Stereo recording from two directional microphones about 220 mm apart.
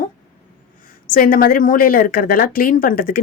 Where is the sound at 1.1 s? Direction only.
40° left (ahead or behind).